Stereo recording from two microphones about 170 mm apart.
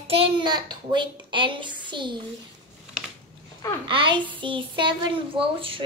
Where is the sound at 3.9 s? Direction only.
30° right (ahead or behind).